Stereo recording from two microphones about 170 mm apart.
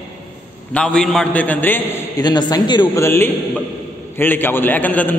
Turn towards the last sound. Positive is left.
turn(degrees=10)  # may be behind; listen again after turning